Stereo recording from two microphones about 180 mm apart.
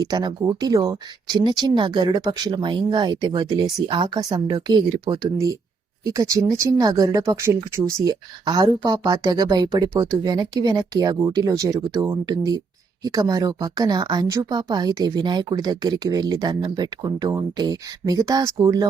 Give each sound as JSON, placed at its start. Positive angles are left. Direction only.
{"t": 0.0, "sound": "speech", "side_deg": -25}